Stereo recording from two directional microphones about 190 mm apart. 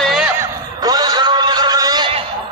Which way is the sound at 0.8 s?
20° right (ahead or behind).